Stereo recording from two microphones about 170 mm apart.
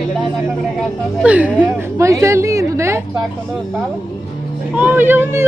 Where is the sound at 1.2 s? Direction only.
10° right (ahead or behind).